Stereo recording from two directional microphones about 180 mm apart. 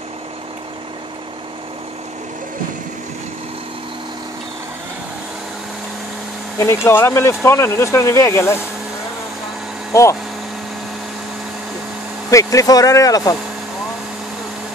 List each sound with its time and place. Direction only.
6.6 s speech: 15° left (ahead or behind)
12.3 s speech: 20° left (ahead or behind)